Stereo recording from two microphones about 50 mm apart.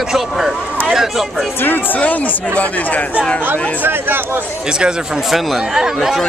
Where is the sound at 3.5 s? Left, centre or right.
Right.